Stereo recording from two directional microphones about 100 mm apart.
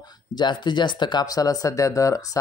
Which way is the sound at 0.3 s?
50° left (ahead or behind).